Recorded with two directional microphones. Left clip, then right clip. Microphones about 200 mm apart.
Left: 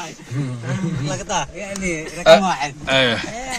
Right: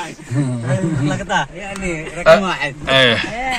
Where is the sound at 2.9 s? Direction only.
10° left (ahead or behind).